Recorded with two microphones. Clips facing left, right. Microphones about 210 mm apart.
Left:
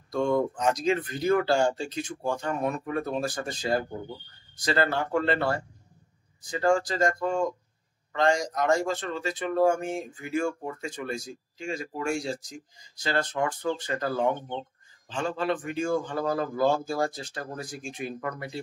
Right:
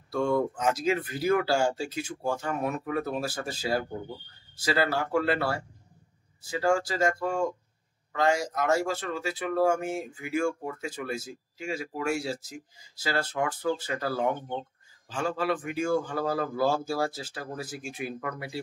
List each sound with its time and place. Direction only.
0.1 s speech: 5° right (ahead or behind)